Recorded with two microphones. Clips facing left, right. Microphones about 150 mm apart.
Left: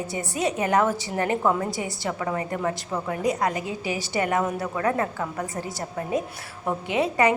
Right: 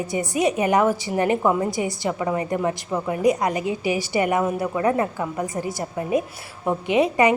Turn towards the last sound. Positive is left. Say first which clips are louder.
# right 4 dB
turn(degrees=-15)  # may be behind; listen again after turning